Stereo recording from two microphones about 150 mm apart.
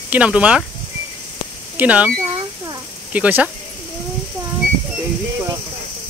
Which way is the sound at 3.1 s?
10° right (ahead or behind).